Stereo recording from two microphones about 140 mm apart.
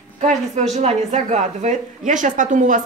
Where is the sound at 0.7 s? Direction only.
55° right (ahead or behind).